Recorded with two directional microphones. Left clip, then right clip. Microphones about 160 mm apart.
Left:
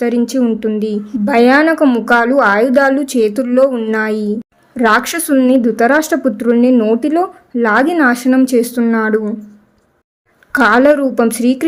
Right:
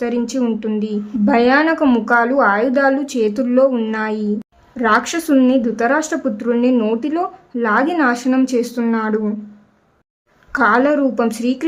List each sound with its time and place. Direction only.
0.0 s a woman's voice: 25° left (ahead or behind)
10.5 s a woman's voice: 30° left (ahead or behind)